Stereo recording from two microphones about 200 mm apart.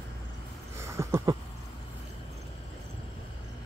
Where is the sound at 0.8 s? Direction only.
15° right (ahead or behind).